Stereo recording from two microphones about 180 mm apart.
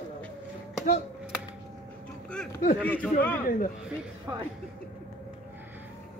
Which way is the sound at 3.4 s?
50° left (ahead or behind).